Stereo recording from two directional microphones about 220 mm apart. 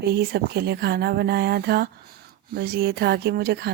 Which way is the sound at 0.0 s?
45° right (ahead or behind).